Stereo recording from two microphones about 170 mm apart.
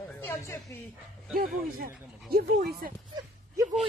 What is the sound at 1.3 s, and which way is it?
Speech, 60° right (ahead or behind).